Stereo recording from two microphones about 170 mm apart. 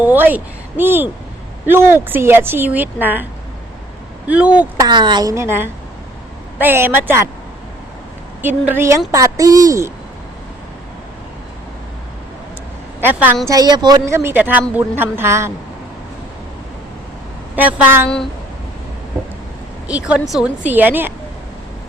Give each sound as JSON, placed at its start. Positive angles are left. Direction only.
{"t": 0.0, "sound": "a woman's voice", "side_deg": -10}
{"t": 4.3, "sound": "a woman's voice", "side_deg": -10}
{"t": 4.8, "sound": "a woman's voice", "side_deg": -25}
{"t": 8.4, "sound": "a woman's voice", "side_deg": -10}
{"t": 13.0, "sound": "a woman's voice", "side_deg": -10}
{"t": 13.5, "sound": "a woman's voice", "side_deg": -25}
{"t": 17.5, "sound": "a woman's voice", "side_deg": -10}
{"t": 20.1, "sound": "a woman's voice", "side_deg": 0}